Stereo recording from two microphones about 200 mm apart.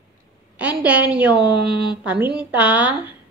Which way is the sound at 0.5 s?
5° right (ahead or behind).